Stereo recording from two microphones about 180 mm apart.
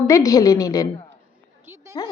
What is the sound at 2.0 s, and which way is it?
Speech, 20° left (ahead or behind).